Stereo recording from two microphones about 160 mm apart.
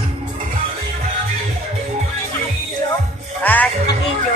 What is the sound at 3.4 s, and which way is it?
Music, 10° left (ahead or behind).